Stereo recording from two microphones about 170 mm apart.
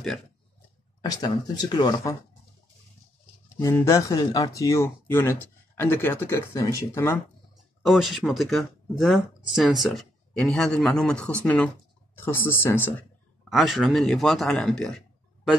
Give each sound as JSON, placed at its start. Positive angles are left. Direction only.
{"t": 1.0, "sound": "speech", "side_deg": 25}
{"t": 3.4, "sound": "speech", "side_deg": 15}
{"t": 7.8, "sound": "speech", "side_deg": 0}
{"t": 13.5, "sound": "speech", "side_deg": 0}